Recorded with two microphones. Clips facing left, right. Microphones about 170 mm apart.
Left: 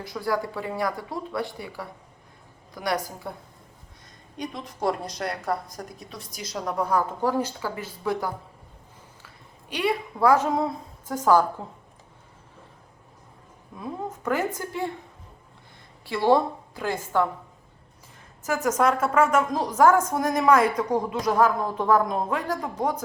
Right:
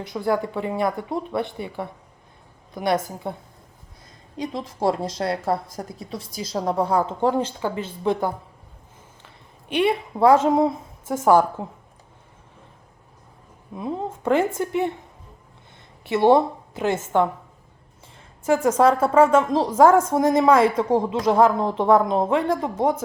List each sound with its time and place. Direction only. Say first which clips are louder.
0.0 s a woman's voice: right 4 dB; 20° right (ahead or behind)
4.8 s a woman's voice: right 4 dB; 25° right (ahead or behind)
13.7 s a woman's voice: right 5 dB; 25° right (ahead or behind)
16.0 s a woman's voice: right 4 dB; 20° right (ahead or behind)
18.4 s a woman's voice: right 5 dB; 30° right (ahead or behind)